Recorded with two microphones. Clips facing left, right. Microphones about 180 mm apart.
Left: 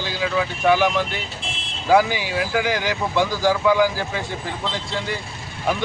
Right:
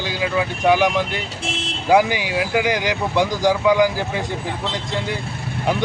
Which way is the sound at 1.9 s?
15° right (ahead or behind).